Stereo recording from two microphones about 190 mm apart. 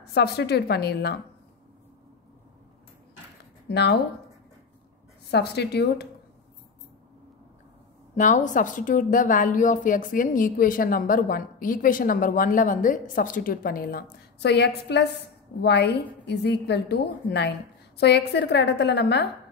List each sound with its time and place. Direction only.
0.0 s a woman's voice: 60° left (ahead or behind)
3.6 s speech: 60° left (ahead or behind)
5.3 s a woman's voice: 60° left (ahead or behind)
8.2 s a woman's voice: 40° left (ahead or behind); by 19.2 s 60° left (ahead or behind)